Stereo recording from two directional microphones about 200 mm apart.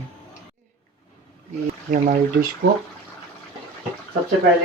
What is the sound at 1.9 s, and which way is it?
Speech, 40° right (ahead or behind).